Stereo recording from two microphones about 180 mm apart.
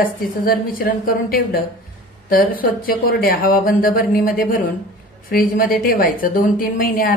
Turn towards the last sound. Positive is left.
turn(degrees=50)  # may be behind; listen again after turning